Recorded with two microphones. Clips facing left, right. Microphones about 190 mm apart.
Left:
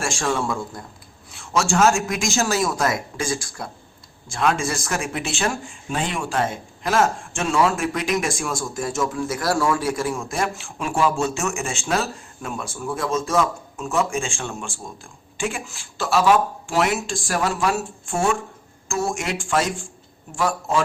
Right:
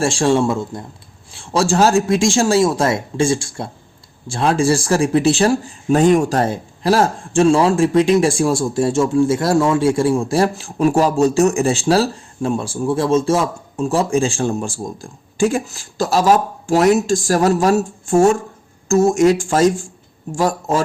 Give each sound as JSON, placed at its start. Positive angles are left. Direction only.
{"t": 0.0, "sound": "speech", "side_deg": -30}